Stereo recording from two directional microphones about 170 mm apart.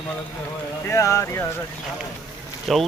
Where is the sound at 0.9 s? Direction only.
15° left (ahead or behind).